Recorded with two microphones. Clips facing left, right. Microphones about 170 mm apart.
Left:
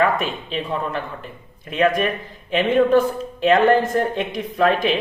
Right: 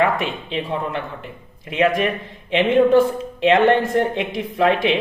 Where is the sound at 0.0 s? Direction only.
25° right (ahead or behind).